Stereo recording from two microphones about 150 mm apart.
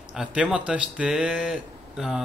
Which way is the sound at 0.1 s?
5° right (ahead or behind).